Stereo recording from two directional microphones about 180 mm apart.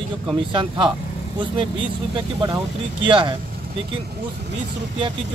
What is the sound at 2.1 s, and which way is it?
Speech, 25° right (ahead or behind).